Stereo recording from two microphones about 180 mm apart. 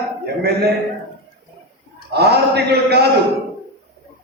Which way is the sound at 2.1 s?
65° right (ahead or behind).